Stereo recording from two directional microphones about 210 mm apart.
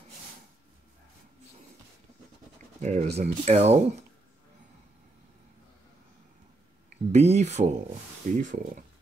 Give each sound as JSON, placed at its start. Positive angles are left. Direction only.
{"t": 2.8, "sound": "speech", "side_deg": -35}
{"t": 7.1, "sound": "speech", "side_deg": -30}